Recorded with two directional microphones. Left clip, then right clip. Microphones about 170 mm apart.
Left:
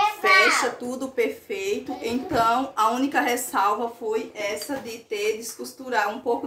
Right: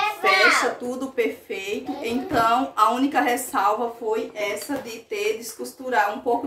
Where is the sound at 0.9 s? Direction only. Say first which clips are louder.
Right 1 dB; 25° left (ahead or behind).